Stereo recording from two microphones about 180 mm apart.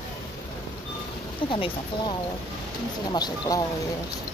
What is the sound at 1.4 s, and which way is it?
Speech, 30° left (ahead or behind).